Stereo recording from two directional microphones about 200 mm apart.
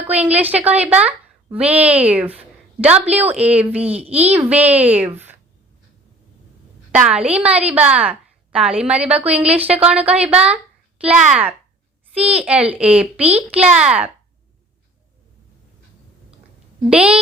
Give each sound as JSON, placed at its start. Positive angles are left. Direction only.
{"t": 0.0, "sound": "a woman's voice", "side_deg": -5}
{"t": 3.8, "sound": "speech", "side_deg": -30}
{"t": 4.3, "sound": "a woman's voice", "side_deg": -5}
{"t": 6.9, "sound": "a woman's voice", "side_deg": -5}
{"t": 10.0, "sound": "speech", "side_deg": -30}
{"t": 11.0, "sound": "a woman's voice", "side_deg": -5}
{"t": 12.2, "sound": "speech", "side_deg": -30}
{"t": 12.5, "sound": "a woman's voice", "side_deg": -5}
{"t": 16.9, "sound": "a woman's voice", "side_deg": -5}